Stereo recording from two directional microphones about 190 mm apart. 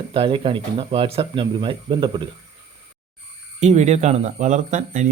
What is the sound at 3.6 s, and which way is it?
Speech, 35° right (ahead or behind).